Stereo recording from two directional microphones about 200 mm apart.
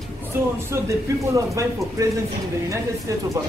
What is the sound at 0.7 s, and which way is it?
Speech, 15° right (ahead or behind).